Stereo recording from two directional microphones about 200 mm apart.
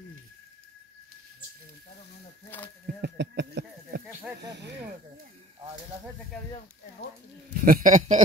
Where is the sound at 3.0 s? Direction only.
55° right (ahead or behind).